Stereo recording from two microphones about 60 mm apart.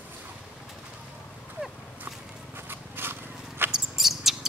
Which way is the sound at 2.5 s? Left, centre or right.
Right.